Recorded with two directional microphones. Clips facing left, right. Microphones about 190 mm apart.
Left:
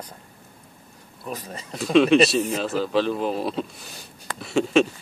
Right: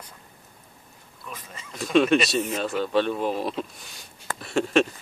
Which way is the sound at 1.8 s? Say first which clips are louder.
Left 4 dB; centre (ahead or behind).